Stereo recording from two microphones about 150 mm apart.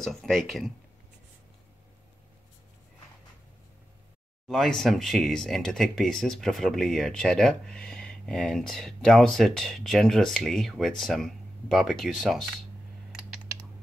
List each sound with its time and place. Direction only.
0.0 s speech: centre (ahead or behind)
4.5 s speech: centre (ahead or behind)